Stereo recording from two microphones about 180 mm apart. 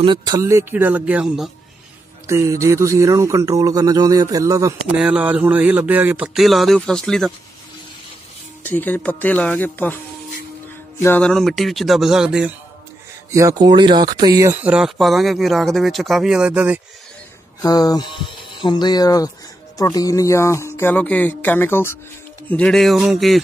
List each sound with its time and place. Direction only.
0.0 s speech: 25° right (ahead or behind); by 1.5 s 5° right (ahead or behind)
2.2 s speech: 15° right (ahead or behind)
4.9 s speech: 5° right (ahead or behind)
8.6 s speech: 10° left (ahead or behind)
11.0 s speech: 10° left (ahead or behind)
13.3 s speech: 15° right (ahead or behind)
17.6 s speech: 20° left (ahead or behind); by 23.4 s centre (ahead or behind)